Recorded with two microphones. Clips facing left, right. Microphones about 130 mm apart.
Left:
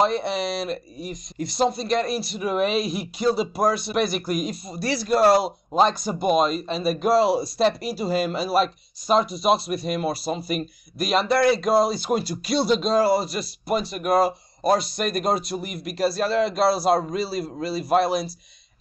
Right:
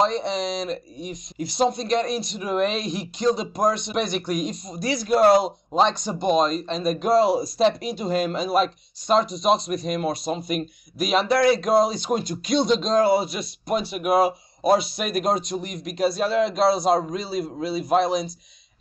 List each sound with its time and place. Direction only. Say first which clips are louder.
0.0 s speech: even; 5° left (ahead or behind)